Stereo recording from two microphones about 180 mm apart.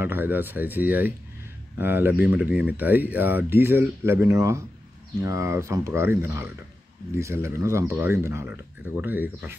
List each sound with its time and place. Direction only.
0.0 s speech: 10° right (ahead or behind)